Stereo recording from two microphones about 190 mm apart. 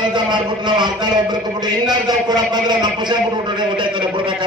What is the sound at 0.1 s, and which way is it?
Speech, 25° right (ahead or behind).